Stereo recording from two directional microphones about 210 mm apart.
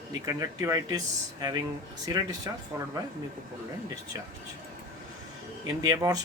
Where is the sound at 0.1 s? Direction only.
15° right (ahead or behind).